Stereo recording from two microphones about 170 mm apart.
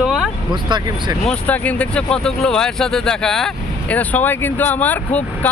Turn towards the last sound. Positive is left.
turn(degrees=10)  # may be behind; listen again after turning